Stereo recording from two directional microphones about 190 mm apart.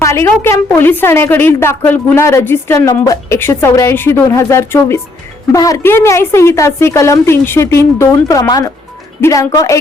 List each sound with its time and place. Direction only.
0.0 s a woman's voice: 15° left (ahead or behind)